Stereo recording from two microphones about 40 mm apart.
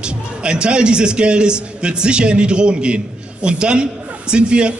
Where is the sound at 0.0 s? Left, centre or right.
Right.